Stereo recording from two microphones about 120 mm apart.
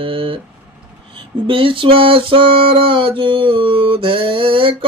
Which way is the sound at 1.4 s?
45° right (ahead or behind).